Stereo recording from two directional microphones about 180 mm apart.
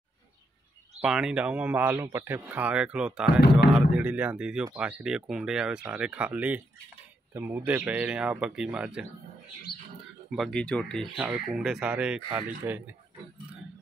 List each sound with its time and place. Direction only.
1.0 s speech: 5° right (ahead or behind)
9.7 s bird: 60° left (ahead or behind)
10.3 s speech: centre (ahead or behind)